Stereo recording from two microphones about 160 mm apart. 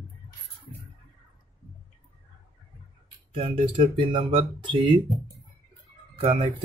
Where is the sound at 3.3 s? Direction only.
35° right (ahead or behind).